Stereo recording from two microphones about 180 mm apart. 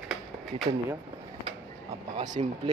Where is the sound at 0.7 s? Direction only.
30° right (ahead or behind).